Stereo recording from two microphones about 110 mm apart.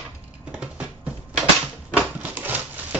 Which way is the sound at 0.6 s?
10° right (ahead or behind).